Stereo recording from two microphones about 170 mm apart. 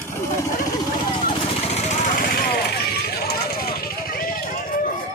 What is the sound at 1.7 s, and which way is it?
Vehicle, 45° left (ahead or behind).